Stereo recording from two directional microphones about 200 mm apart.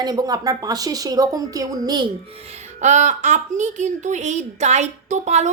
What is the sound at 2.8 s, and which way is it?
A woman's voice, 35° right (ahead or behind).